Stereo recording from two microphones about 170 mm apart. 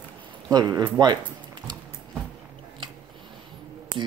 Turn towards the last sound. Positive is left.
turn(degrees=-25)  # may be behind; listen again after turning